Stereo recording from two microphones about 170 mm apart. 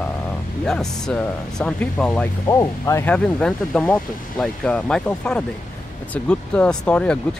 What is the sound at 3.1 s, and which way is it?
Speech, 5° left (ahead or behind).